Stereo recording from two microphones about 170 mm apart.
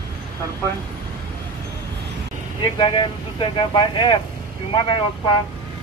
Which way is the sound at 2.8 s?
30° left (ahead or behind).